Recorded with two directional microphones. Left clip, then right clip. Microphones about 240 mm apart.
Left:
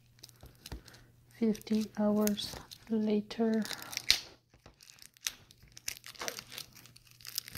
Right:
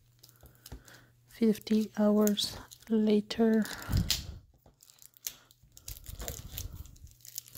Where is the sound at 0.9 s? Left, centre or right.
Right.